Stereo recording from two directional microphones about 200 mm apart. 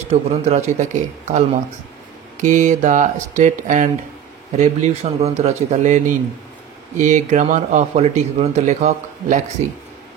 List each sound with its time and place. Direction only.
0.1 s speech: 35° right (ahead or behind)
2.4 s speech: 40° right (ahead or behind)